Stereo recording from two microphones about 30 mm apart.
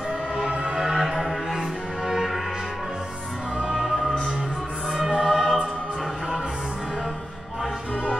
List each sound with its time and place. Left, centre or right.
0.7 s music: centre
2.0 s music: centre
3.7 s music: centre
5.1 s choir: centre